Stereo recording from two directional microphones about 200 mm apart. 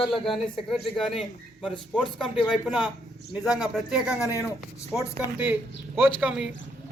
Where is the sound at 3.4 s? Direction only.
Centre (ahead or behind).